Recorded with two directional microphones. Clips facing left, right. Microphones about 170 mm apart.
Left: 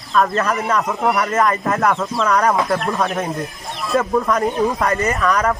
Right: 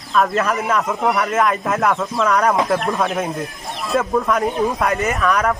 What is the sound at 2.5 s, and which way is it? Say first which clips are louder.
Speech: right 1 dB; 15° right (ahead or behind).